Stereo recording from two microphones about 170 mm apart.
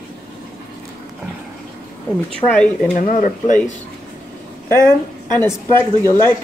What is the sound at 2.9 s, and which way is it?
Speech, 50° left (ahead or behind).